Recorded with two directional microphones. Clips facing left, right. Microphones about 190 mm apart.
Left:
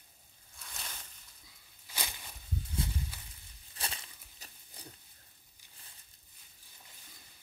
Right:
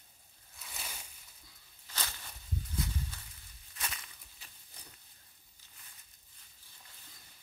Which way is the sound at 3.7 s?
30° left (ahead or behind).